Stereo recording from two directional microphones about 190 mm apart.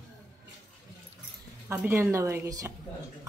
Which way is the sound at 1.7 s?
10° right (ahead or behind).